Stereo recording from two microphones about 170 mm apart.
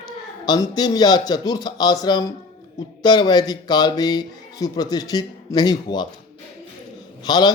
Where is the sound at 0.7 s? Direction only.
25° left (ahead or behind).